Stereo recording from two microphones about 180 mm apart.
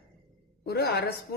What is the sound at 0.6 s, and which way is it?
Speech, 60° left (ahead or behind).